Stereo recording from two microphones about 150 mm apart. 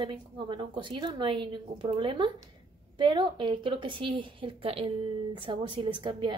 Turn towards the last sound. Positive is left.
turn(degrees=-35)  # may be behind; listen again after turning